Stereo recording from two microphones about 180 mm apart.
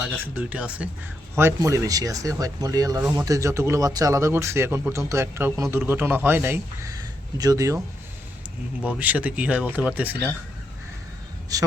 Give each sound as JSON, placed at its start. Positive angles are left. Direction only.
{"t": 0.3, "sound": "speech", "side_deg": -10}
{"t": 9.0, "sound": "speech", "side_deg": -10}